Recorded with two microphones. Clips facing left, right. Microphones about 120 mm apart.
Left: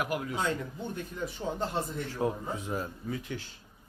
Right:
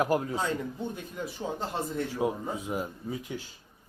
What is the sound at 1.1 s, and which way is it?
Speech, 5° right (ahead or behind).